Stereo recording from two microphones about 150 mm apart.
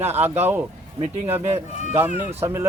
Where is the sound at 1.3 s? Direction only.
15° right (ahead or behind).